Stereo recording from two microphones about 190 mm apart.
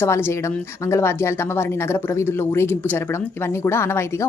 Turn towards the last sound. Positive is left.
turn(degrees=15)  # may be behind; listen again after turning